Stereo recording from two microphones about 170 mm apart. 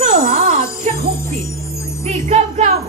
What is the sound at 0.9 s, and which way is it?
Jingle bell, 40° right (ahead or behind).